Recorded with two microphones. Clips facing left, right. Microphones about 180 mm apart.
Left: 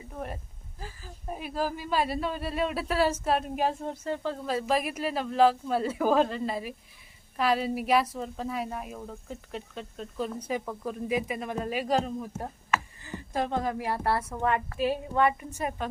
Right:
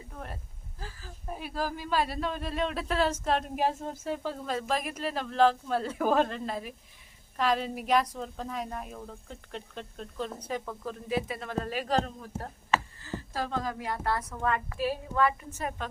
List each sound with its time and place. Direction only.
0.1 s speech: 10° left (ahead or behind); by 4.4 s 5° right (ahead or behind)
4.4 s a woman's voice: 5° left (ahead or behind); by 15.4 s 25° left (ahead or behind)
15.4 s speech: 10° left (ahead or behind)